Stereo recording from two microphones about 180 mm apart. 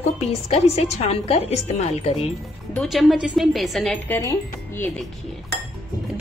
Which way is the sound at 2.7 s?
Centre (ahead or behind).